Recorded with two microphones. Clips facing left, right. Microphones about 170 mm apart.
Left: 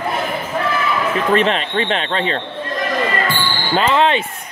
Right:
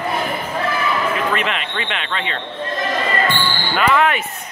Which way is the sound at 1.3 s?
35° left (ahead or behind).